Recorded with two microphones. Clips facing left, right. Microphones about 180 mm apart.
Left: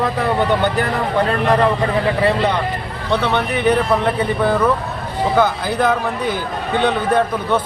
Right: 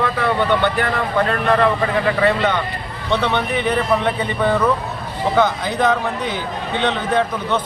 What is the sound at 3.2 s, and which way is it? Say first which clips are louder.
A man's voice: left 3 dB; 5° left (ahead or behind).